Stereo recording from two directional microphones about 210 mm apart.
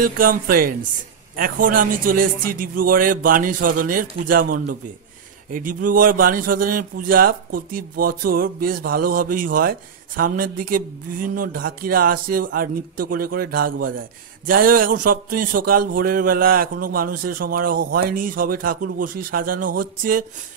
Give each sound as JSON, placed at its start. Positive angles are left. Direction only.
{"t": 0.0, "sound": "a man's voice", "side_deg": -40}